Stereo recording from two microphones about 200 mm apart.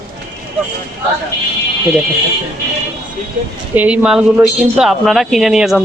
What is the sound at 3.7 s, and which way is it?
Speech, 5° right (ahead or behind).